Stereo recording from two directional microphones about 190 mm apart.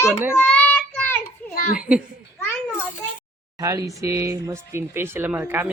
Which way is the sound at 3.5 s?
15° right (ahead or behind).